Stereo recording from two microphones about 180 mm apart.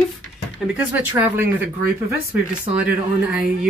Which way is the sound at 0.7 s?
15° right (ahead or behind).